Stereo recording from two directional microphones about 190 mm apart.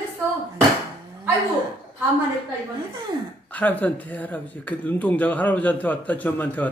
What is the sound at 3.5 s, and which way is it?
Speech, 10° left (ahead or behind).